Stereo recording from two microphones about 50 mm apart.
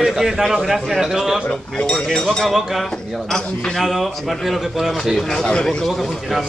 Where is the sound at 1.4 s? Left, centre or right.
Centre.